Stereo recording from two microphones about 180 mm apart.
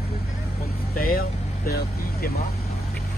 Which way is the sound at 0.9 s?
55° left (ahead or behind).